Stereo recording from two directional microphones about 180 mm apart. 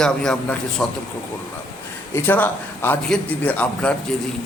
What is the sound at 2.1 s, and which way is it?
A man's voice, 10° left (ahead or behind).